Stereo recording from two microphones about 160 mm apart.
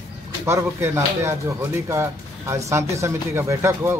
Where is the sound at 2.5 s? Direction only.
20° right (ahead or behind).